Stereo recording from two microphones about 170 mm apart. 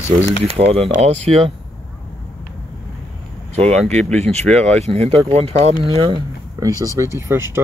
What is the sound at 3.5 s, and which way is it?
Speech, 40° right (ahead or behind).